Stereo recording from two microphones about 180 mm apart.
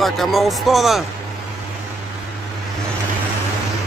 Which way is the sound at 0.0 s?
Centre (ahead or behind).